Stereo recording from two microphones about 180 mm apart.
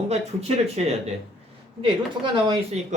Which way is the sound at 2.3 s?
30° right (ahead or behind).